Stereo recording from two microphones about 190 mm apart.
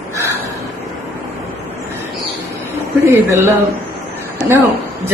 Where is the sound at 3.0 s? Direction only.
10° right (ahead or behind).